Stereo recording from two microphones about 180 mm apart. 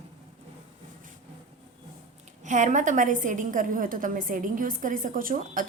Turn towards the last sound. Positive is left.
turn(degrees=-50)  # may be behind; listen again after turning